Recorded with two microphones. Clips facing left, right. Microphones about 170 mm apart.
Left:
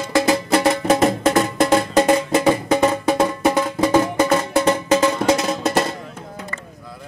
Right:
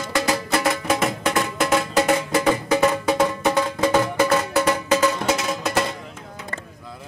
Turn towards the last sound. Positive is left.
turn(degrees=35)  # may be behind; listen again after turning